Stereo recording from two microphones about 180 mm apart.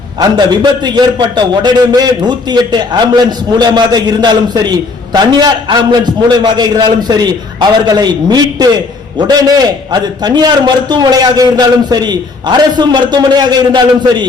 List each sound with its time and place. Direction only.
0.2 s a man's voice: 25° right (ahead or behind)
9.9 s a man's voice: 25° right (ahead or behind)